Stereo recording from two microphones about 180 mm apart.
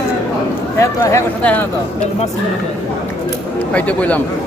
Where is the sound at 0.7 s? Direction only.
15° left (ahead or behind).